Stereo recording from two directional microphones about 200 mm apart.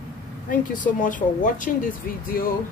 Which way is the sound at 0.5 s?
40° left (ahead or behind).